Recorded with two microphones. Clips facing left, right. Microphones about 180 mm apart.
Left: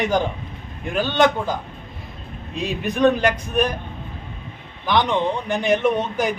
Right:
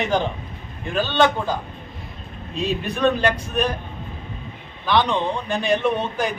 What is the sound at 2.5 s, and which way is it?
A man's voice, 15° left (ahead or behind).